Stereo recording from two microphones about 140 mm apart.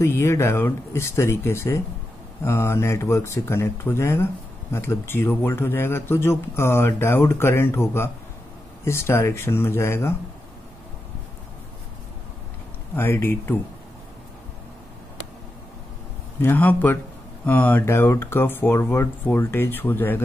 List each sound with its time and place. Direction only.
0.0 s speech: 20° left (ahead or behind)
12.9 s speech: 15° left (ahead or behind)
16.3 s speech: 15° left (ahead or behind)